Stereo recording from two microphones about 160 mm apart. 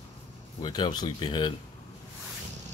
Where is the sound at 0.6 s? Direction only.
30° left (ahead or behind).